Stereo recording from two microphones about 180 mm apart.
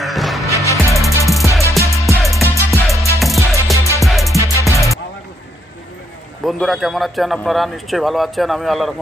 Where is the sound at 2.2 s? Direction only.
Centre (ahead or behind).